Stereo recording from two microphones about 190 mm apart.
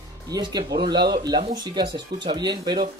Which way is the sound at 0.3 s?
20° right (ahead or behind).